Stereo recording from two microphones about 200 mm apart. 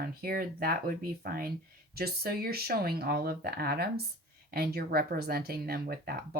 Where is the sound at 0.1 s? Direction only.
50° right (ahead or behind).